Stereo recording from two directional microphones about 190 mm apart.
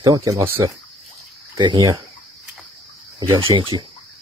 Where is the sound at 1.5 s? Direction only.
25° right (ahead or behind).